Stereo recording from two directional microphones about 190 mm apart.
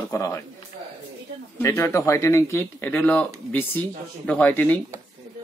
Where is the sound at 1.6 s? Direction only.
15° left (ahead or behind).